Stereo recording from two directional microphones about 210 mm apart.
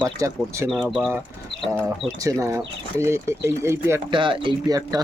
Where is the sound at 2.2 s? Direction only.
15° right (ahead or behind).